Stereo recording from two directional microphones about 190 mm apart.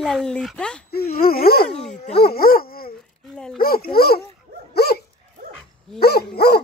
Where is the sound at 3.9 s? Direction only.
55° left (ahead or behind).